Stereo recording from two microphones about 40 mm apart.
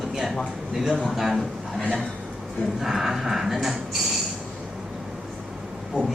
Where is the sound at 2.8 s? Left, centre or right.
Centre.